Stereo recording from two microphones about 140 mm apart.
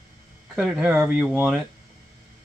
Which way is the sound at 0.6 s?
5° right (ahead or behind).